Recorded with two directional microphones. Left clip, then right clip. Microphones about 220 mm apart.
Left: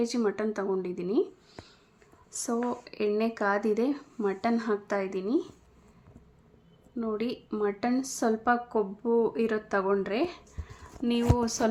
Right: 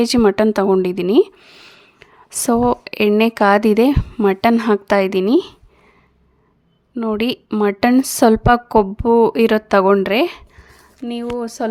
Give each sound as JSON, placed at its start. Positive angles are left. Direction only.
{"t": 0.0, "sound": "a woman's voice", "side_deg": -45}
{"t": 6.9, "sound": "a woman's voice", "side_deg": -40}
{"t": 11.0, "sound": "a woman's voice", "side_deg": -20}